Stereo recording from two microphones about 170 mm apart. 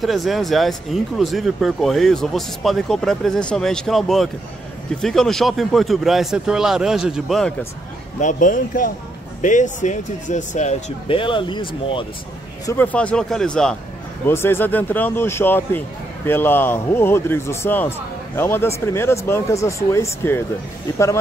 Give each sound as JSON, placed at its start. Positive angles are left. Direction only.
{"t": 0.0, "sound": "speech", "side_deg": 0}
{"t": 8.2, "sound": "speech", "side_deg": 50}
{"t": 12.6, "sound": "speech", "side_deg": 10}
{"t": 14.2, "sound": "a man's voice", "side_deg": 15}